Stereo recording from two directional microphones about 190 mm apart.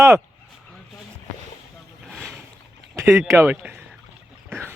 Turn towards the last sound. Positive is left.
turn(degrees=-10)  # may be behind; listen again after turning